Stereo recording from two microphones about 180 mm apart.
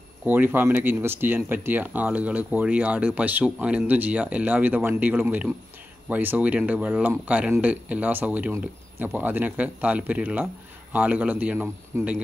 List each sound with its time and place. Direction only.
0.2 s speech: 10° right (ahead or behind)